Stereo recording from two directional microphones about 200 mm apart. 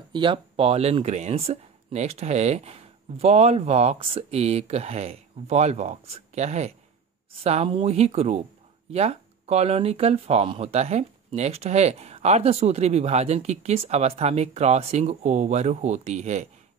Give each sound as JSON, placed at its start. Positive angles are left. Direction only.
{"t": 0.1, "sound": "speech", "side_deg": -25}